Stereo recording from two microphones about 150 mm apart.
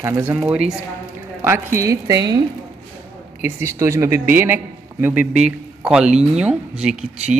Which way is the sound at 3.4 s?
20° right (ahead or behind).